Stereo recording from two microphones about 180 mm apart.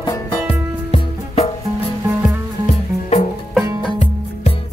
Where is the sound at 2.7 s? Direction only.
40° left (ahead or behind).